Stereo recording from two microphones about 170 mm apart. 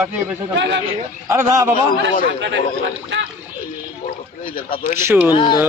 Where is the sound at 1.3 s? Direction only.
15° right (ahead or behind).